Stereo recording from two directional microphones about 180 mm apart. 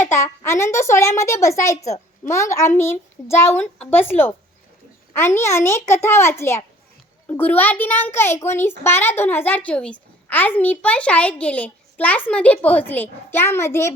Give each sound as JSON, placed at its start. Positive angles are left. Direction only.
{"t": 0.1, "sound": "a woman's voice", "side_deg": 15}